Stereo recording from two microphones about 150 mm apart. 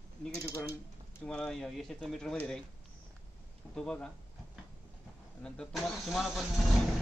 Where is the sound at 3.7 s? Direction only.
5° left (ahead or behind).